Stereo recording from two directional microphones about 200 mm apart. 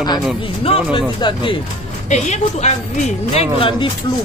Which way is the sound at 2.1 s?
35° left (ahead or behind).